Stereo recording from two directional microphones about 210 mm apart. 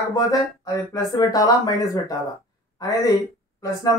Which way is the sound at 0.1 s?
15° left (ahead or behind).